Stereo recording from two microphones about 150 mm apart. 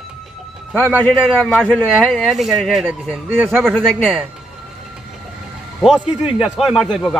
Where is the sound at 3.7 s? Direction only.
5° left (ahead or behind).